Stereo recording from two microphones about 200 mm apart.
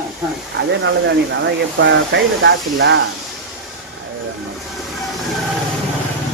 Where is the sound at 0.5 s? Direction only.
60° right (ahead or behind).